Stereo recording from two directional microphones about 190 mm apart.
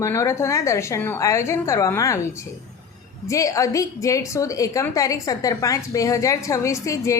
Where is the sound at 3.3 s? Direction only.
15° left (ahead or behind).